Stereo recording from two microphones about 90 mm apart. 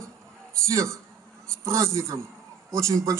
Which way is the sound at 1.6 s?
35° right (ahead or behind).